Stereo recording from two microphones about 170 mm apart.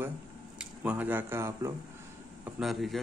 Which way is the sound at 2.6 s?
Centre (ahead or behind).